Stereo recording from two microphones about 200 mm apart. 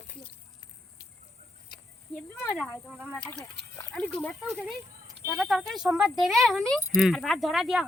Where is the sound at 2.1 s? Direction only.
10° left (ahead or behind).